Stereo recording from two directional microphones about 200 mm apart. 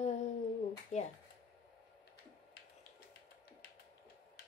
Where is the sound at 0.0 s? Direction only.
35° left (ahead or behind).